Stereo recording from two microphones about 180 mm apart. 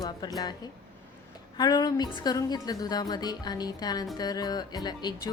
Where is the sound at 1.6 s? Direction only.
20° left (ahead or behind).